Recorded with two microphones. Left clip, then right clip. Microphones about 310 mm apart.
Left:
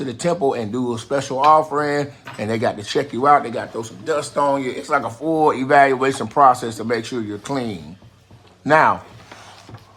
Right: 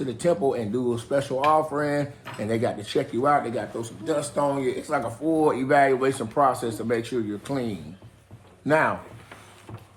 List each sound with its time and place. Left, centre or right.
0.0 s speech: left